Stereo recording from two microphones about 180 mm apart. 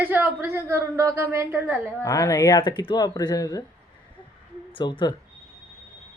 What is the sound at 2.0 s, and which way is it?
Speech, 20° left (ahead or behind).